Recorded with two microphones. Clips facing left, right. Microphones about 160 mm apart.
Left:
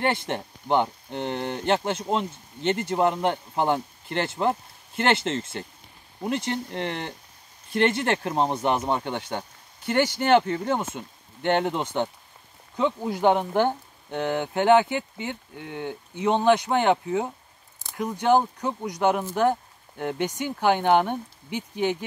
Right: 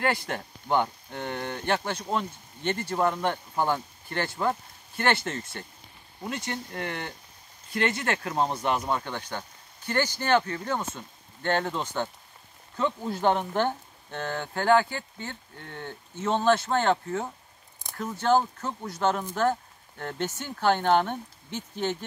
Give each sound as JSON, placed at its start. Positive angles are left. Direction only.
{"t": 0.0, "sound": "speech", "side_deg": 25}